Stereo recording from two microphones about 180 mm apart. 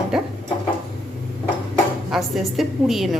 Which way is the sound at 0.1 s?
5° right (ahead or behind).